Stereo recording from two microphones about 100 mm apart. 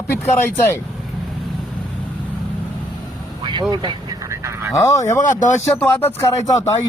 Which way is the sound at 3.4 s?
50° right (ahead or behind).